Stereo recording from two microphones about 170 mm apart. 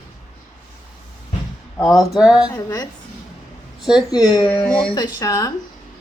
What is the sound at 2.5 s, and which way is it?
Speech, 20° left (ahead or behind).